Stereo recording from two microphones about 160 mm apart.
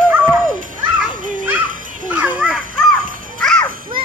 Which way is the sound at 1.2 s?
55° right (ahead or behind).